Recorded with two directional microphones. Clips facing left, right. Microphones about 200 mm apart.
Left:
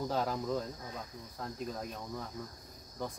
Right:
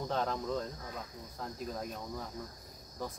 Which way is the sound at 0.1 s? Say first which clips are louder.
Right 2 dB; 5° left (ahead or behind).